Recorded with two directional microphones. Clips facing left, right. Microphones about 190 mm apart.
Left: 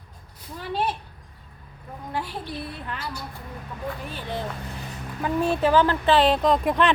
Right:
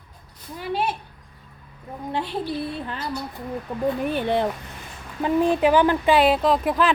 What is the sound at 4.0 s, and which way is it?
Speech, 60° right (ahead or behind).